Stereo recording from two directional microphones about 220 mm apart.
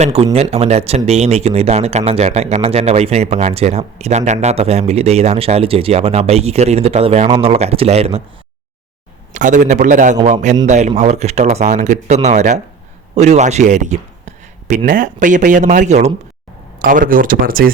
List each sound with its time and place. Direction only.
0.0 s speech: 25° right (ahead or behind)
9.3 s speech: 35° right (ahead or behind)